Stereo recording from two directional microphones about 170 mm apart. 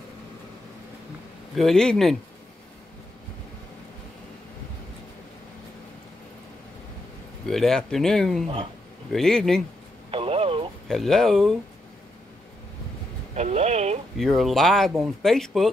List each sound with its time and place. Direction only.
1.5 s speech: centre (ahead or behind)
7.4 s speech: centre (ahead or behind)
10.1 s a sound: 35° right (ahead or behind)
10.9 s speech: centre (ahead or behind)
13.4 s speech: 40° right (ahead or behind)
14.1 s speech: centre (ahead or behind)